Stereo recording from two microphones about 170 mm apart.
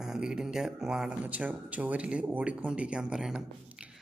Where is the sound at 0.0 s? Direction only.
5° right (ahead or behind).